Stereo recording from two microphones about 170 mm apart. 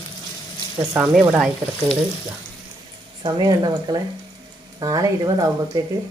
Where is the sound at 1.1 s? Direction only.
5° right (ahead or behind).